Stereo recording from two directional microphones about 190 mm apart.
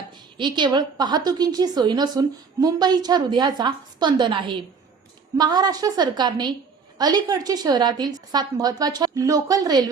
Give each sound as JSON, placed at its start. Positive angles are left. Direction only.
{"t": 0.3, "sound": "a woman's voice", "side_deg": -25}